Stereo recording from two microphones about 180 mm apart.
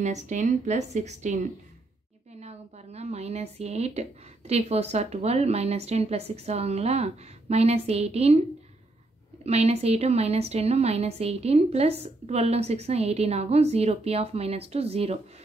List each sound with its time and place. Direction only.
0.0 s a woman's voice: 40° right (ahead or behind)
9.4 s a woman's voice: 35° right (ahead or behind)